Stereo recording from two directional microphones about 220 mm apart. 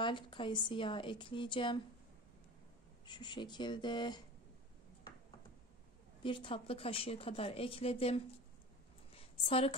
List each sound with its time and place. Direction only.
0.0 s a woman's voice: 20° left (ahead or behind)
3.1 s a woman's voice: 20° left (ahead or behind)
6.2 s a woman's voice: 20° left (ahead or behind)
9.1 s a sound: 25° left (ahead or behind)